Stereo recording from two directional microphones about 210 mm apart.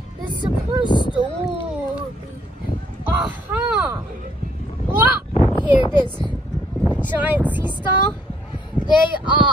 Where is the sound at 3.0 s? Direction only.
5° right (ahead or behind).